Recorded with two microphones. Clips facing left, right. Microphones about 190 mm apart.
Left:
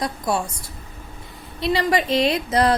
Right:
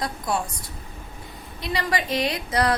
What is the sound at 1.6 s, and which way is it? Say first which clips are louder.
A woman's voice: left 6 dB; 25° left (ahead or behind).